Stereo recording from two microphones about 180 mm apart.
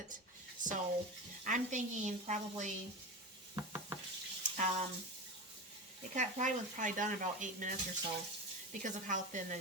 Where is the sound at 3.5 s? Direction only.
15° right (ahead or behind).